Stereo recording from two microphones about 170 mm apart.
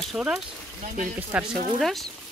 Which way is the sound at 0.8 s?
50° right (ahead or behind).